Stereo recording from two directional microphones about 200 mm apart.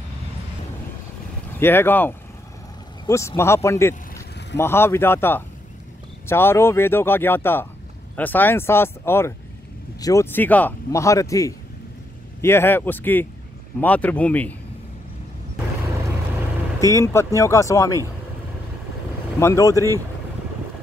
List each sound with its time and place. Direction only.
1.6 s speech: 10° left (ahead or behind)
16.9 s speech: 15° left (ahead or behind)
19.4 s speech: 15° left (ahead or behind)